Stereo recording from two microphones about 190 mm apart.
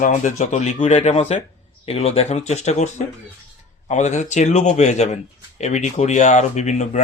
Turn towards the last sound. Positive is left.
turn(degrees=40)  # may be behind; listen again after turning